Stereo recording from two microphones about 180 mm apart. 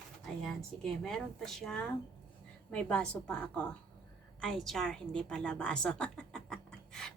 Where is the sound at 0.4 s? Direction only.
Centre (ahead or behind).